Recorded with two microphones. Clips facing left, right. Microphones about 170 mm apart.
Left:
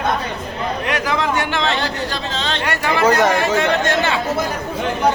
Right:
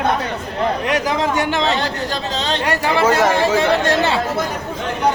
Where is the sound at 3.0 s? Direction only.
Centre (ahead or behind).